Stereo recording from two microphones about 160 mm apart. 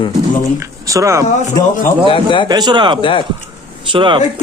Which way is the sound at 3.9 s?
30° right (ahead or behind).